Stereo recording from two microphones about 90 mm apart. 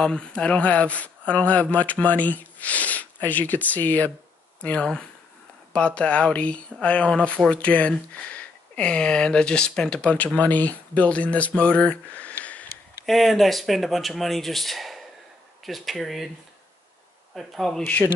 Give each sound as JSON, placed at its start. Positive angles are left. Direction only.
{"t": 0.0, "sound": "speech", "side_deg": 10}
{"t": 13.0, "sound": "speech", "side_deg": 0}
{"t": 17.4, "sound": "speech", "side_deg": 0}